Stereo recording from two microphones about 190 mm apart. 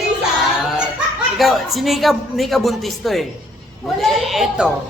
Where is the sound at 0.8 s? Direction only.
Centre (ahead or behind).